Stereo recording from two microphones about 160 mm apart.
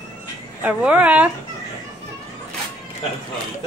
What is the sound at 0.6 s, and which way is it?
Speech, 10° right (ahead or behind).